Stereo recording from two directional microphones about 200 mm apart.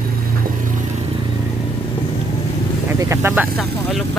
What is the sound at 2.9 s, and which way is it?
Speech, 10° right (ahead or behind).